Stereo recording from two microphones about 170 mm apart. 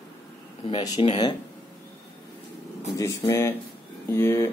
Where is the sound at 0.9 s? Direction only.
40° left (ahead or behind).